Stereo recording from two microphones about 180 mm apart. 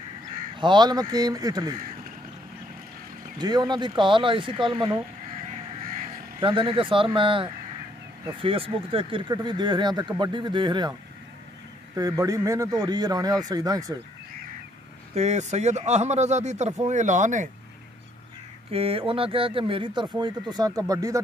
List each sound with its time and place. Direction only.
0.6 s speech: 25° right (ahead or behind)
3.3 s speech: 25° right (ahead or behind)
5.5 s crow: 50° right (ahead or behind)
6.4 s speech: 30° right (ahead or behind)
15.1 s speech: 40° right (ahead or behind)
18.7 s speech: 30° right (ahead or behind)